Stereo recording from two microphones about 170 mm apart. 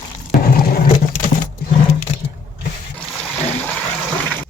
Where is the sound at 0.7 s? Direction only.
55° left (ahead or behind).